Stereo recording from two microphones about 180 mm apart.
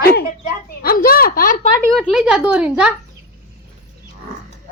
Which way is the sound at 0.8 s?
55° left (ahead or behind).